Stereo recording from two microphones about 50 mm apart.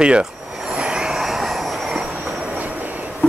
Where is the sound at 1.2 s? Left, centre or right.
Centre.